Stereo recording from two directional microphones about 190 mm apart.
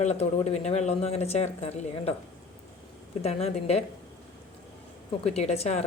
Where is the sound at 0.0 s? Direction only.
35° left (ahead or behind).